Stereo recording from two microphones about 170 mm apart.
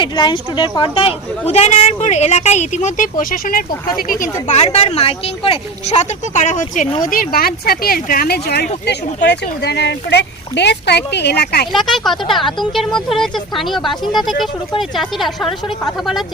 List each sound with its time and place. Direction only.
0.0 s speech: 25° left (ahead or behind); by 4.5 s 55° left (ahead or behind)
4.5 s speech: 40° left (ahead or behind)
7.1 s speech: 60° left (ahead or behind)
11.7 s speech: centre (ahead or behind)